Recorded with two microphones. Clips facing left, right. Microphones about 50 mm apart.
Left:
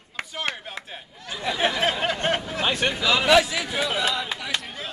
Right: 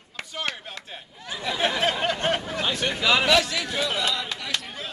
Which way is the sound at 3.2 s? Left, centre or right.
Centre.